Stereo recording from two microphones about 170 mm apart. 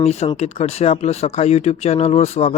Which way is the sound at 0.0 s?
40° left (ahead or behind).